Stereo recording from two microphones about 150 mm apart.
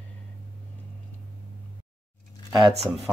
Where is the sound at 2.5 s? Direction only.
30° right (ahead or behind).